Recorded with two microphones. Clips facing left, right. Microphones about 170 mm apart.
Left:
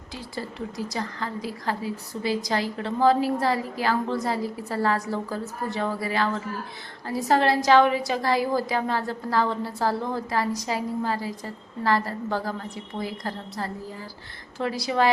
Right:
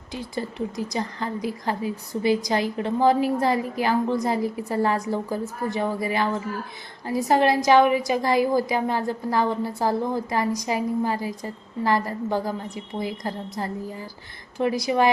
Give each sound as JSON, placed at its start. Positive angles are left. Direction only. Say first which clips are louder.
{"t": 0.1, "sound": "a woman's voice", "louder": "right 4 dB", "side_deg": -20}